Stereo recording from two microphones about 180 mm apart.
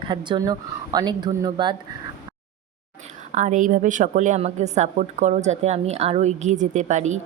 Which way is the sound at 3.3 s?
40° right (ahead or behind).